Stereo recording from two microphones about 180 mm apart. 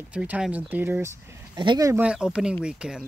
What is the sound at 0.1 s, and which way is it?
Speech, 5° right (ahead or behind).